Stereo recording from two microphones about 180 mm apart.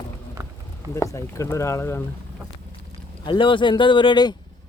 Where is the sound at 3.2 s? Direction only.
25° left (ahead or behind).